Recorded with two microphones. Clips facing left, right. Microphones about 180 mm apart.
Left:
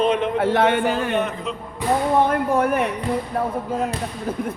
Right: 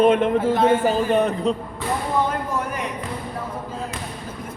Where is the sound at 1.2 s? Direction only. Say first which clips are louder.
Right 4 dB; 35° right (ahead or behind).